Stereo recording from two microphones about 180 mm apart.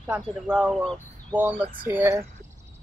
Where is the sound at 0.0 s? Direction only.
5° right (ahead or behind).